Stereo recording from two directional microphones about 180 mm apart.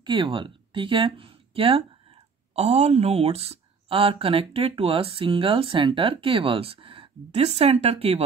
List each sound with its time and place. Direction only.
0.0 s speech: 25° right (ahead or behind)